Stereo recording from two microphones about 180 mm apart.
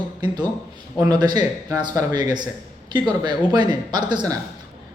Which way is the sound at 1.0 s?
25° right (ahead or behind).